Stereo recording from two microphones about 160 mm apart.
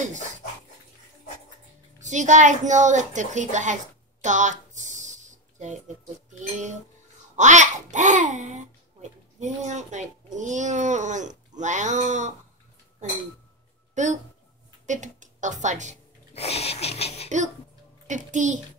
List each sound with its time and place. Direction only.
2.0 s a child's voice: 50° right (ahead or behind)
4.2 s a sound: 50° right (ahead or behind)
6.5 s a child's voice: 50° right (ahead or behind)
14.0 s a child's voice: 50° right (ahead or behind)
16.3 s a sound: 40° left (ahead or behind)
18.0 s a child's voice: 50° right (ahead or behind)